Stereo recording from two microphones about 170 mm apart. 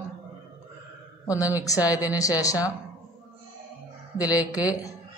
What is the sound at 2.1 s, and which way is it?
Speech, 20° left (ahead or behind).